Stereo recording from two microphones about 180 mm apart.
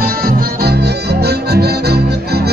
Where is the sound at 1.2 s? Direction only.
65° right (ahead or behind).